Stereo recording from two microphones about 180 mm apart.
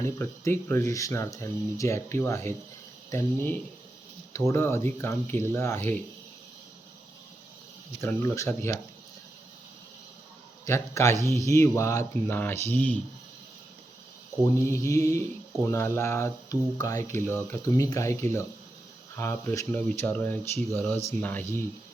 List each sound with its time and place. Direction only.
0.0 s speech: 15° left (ahead or behind)
8.0 s speech: 15° left (ahead or behind)
10.7 s speech: 15° left (ahead or behind)
14.6 s speech: 15° left (ahead or behind)